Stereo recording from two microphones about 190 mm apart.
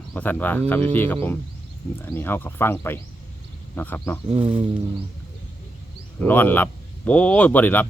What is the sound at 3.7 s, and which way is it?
Speech, 10° left (ahead or behind).